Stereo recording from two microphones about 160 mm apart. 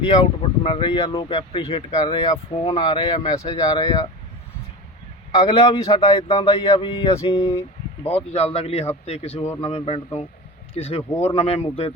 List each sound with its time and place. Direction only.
0.6 s speech: 35° left (ahead or behind)
5.4 s speech: 30° left (ahead or behind)
8.0 s speech: 40° left (ahead or behind)